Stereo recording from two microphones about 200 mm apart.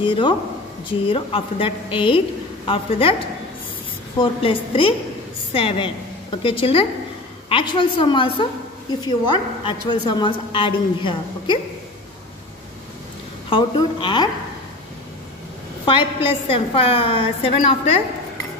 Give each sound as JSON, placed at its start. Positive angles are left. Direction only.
{"t": 0.0, "sound": "a woman's voice", "side_deg": 25}
{"t": 4.2, "sound": "a woman's voice", "side_deg": 25}
{"t": 13.5, "sound": "a woman's voice", "side_deg": 25}
{"t": 15.8, "sound": "a woman's voice", "side_deg": 25}